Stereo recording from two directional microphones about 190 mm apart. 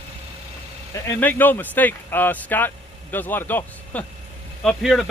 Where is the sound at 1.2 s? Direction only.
10° left (ahead or behind).